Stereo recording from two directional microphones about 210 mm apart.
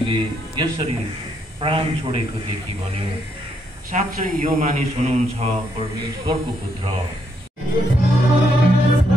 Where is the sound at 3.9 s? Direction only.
35° right (ahead or behind).